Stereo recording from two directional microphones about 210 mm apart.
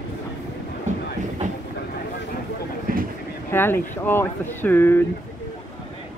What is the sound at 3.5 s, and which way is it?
Speech, 10° left (ahead or behind).